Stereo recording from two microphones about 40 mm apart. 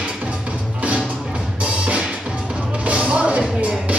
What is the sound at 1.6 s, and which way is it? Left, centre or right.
Music, right.